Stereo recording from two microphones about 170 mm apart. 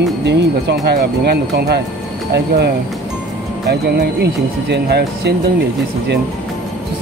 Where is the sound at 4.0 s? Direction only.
80° right.